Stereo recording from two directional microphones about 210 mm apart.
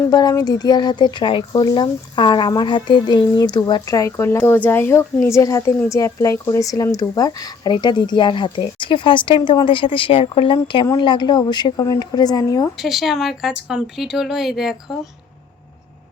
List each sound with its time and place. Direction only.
0.1 s speech: 20° left (ahead or behind)
12.7 s speech: centre (ahead or behind)